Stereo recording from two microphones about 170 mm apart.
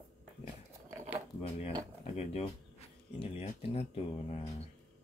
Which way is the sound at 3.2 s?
35° left (ahead or behind).